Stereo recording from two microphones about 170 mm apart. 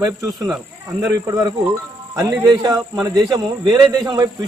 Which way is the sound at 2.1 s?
20° right (ahead or behind).